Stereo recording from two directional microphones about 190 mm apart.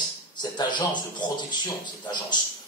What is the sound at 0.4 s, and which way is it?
A man's voice, 25° left (ahead or behind).